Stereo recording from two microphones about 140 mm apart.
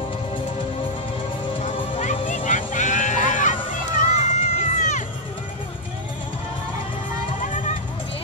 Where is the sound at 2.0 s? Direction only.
60° left (ahead or behind).